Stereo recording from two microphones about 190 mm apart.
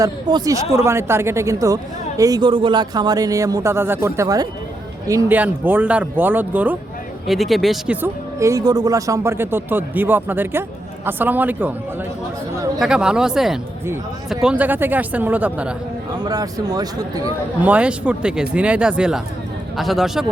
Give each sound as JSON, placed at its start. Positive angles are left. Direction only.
{"t": 0.0, "sound": "speech", "side_deg": -20}
{"t": 8.0, "sound": "speech", "side_deg": -15}
{"t": 12.8, "sound": "speech", "side_deg": -5}
{"t": 16.2, "sound": "speech", "side_deg": -20}
{"t": 17.6, "sound": "speech", "side_deg": -5}